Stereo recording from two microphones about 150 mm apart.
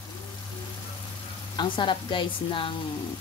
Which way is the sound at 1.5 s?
35° left (ahead or behind).